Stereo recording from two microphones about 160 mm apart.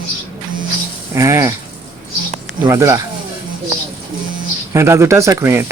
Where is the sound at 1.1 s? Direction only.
20° right (ahead or behind).